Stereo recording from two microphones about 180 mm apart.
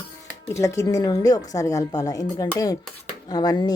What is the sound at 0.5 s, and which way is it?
Speech, 15° left (ahead or behind).